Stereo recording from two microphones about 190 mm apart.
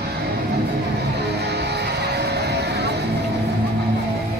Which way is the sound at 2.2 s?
60° right (ahead or behind).